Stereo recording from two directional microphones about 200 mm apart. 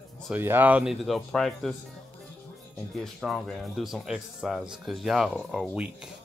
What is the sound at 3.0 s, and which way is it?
Speech, centre (ahead or behind).